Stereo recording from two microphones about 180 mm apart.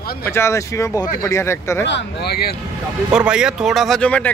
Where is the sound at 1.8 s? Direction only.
70° left (ahead or behind).